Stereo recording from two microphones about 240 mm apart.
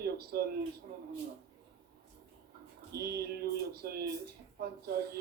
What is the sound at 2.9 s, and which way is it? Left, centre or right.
Speech, right.